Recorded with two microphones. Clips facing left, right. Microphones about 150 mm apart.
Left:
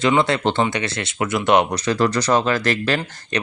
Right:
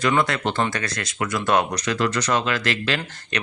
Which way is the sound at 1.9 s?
35° left (ahead or behind).